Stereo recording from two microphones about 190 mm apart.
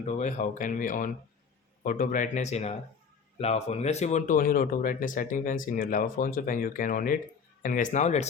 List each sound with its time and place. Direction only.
0.0 s speech: 40° left (ahead or behind)